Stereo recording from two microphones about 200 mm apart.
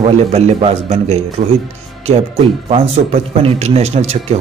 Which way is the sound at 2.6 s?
30° right (ahead or behind).